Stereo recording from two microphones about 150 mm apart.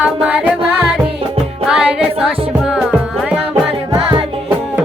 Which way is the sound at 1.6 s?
5° right (ahead or behind).